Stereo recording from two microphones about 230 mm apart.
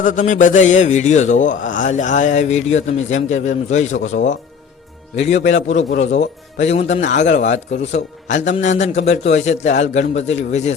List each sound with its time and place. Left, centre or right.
0.0 s a man's voice: left